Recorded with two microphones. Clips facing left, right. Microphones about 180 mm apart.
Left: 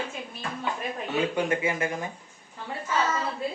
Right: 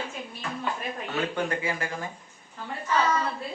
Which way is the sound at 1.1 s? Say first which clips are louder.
Left 3 dB; 15° left (ahead or behind).